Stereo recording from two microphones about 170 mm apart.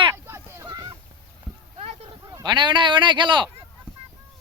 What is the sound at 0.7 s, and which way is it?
Goose, 25° right (ahead or behind).